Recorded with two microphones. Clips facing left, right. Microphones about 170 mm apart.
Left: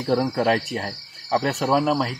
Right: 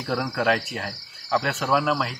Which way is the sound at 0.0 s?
30° left (ahead or behind).